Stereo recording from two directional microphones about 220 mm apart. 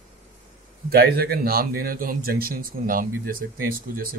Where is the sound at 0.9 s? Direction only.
45° right (ahead or behind).